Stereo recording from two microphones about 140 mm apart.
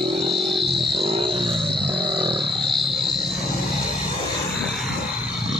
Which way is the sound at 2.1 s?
35° right (ahead or behind).